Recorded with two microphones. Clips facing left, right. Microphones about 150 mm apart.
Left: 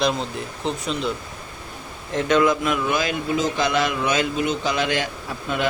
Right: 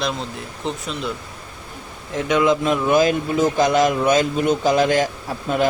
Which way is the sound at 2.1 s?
5° right (ahead or behind).